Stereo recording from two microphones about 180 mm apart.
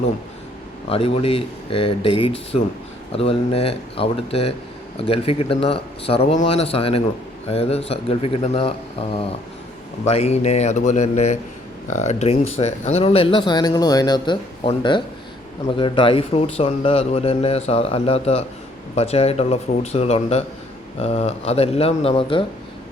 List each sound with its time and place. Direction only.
0.9 s speech: 30° left (ahead or behind)